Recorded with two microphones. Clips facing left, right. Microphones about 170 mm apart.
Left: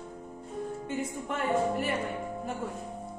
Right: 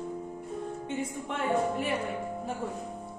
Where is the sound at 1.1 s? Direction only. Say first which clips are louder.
Even; centre (ahead or behind).